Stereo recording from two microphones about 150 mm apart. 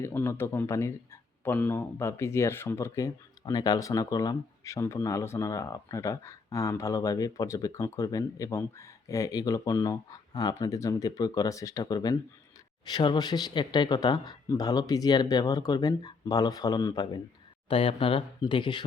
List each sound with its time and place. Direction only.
0.0 s speech: 15° left (ahead or behind); by 18.9 s 35° left (ahead or behind)